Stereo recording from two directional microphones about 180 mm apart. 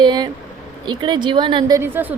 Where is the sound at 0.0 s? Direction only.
25° right (ahead or behind).